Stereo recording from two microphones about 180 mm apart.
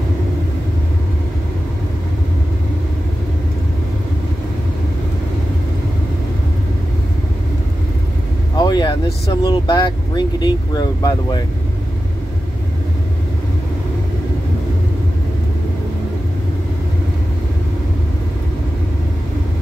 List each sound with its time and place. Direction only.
8.5 s vehicle: 25° left (ahead or behind)
9.4 s speech: 25° left (ahead or behind)